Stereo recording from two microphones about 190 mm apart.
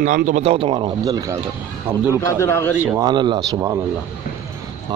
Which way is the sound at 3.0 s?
25° right (ahead or behind).